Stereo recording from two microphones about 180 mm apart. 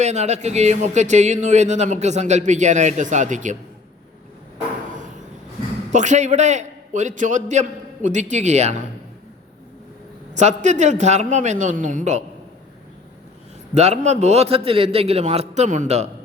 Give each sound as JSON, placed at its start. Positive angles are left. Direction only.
{"t": 0.0, "sound": "speech", "side_deg": -40}
{"t": 4.5, "sound": "a sound", "side_deg": -45}
{"t": 5.9, "sound": "speech", "side_deg": -40}
{"t": 10.3, "sound": "speech", "side_deg": -40}
{"t": 13.7, "sound": "speech", "side_deg": -40}